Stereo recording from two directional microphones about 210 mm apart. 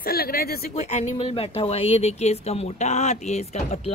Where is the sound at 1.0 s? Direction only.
25° left (ahead or behind).